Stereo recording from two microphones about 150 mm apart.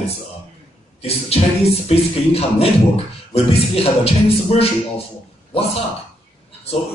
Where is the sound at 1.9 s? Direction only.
40° left (ahead or behind).